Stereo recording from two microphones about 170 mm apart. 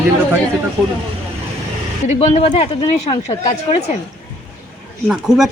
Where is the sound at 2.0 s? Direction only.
40° left (ahead or behind).